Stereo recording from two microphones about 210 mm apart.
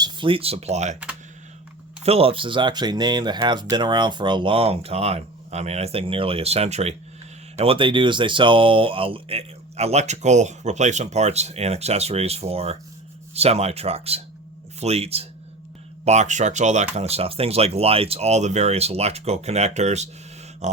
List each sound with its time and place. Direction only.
0.0 s speech: 25° right (ahead or behind)
2.0 s speech: 25° right (ahead or behind)